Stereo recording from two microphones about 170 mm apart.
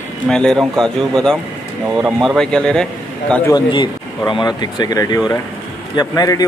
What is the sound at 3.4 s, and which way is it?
Speech, 25° left (ahead or behind).